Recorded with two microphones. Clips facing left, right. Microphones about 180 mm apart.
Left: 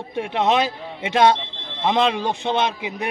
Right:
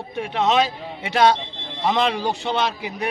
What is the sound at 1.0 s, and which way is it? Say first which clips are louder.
Speech: left 1 dB; 25° left (ahead or behind).